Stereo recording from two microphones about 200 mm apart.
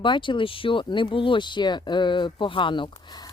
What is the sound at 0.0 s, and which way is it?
Speech, 25° left (ahead or behind).